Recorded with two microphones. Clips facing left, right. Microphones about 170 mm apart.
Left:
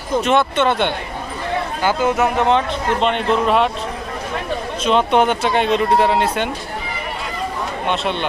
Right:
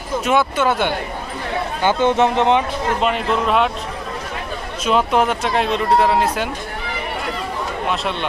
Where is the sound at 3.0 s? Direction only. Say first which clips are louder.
Left 2 dB; centre (ahead or behind).